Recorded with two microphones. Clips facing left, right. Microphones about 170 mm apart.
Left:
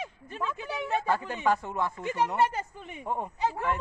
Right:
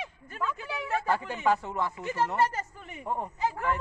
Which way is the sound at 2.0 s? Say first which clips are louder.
Left 1 dB; 15° left (ahead or behind).